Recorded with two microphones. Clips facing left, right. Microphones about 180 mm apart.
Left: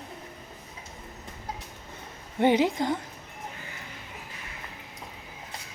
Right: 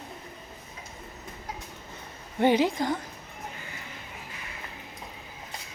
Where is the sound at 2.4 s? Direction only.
20° left (ahead or behind).